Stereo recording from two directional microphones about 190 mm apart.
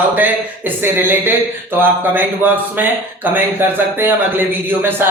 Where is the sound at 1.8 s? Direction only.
10° right (ahead or behind).